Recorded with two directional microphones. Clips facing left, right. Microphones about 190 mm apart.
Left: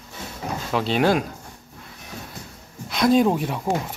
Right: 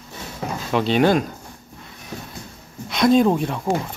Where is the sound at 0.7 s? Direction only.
Centre (ahead or behind).